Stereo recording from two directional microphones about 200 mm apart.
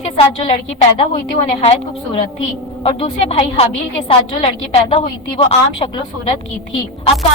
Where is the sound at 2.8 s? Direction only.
30° left (ahead or behind).